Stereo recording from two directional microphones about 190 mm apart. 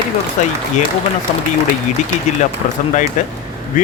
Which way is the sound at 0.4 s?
40° left (ahead or behind).